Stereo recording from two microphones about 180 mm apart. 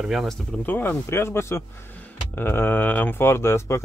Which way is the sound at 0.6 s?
10° left (ahead or behind).